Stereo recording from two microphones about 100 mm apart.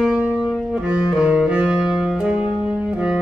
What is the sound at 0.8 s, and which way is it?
Saxophone, 10° right (ahead or behind).